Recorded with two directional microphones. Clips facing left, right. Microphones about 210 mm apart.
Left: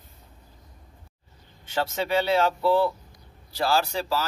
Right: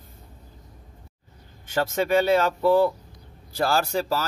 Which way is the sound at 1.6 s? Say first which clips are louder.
Right 3 dB; 45° right (ahead or behind).